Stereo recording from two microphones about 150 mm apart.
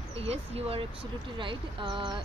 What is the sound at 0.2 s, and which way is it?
Speech, 45° right (ahead or behind).